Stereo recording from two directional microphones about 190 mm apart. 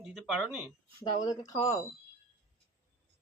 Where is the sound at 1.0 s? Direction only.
20° left (ahead or behind).